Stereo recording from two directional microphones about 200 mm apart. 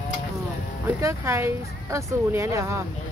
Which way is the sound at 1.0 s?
15° right (ahead or behind).